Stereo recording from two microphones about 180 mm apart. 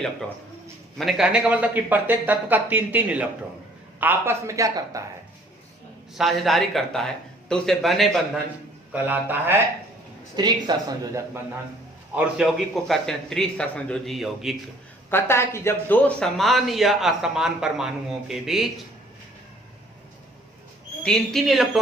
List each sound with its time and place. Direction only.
0.9 s speech: centre (ahead or behind); by 5.0 s 20° right (ahead or behind)
6.1 s a man's voice: centre (ahead or behind)
10.3 s speech: 25° right (ahead or behind)
12.1 s a man's voice: centre (ahead or behind)
15.1 s a man's voice: 15° left (ahead or behind); by 18.7 s centre (ahead or behind)
21.0 s a man's voice: centre (ahead or behind)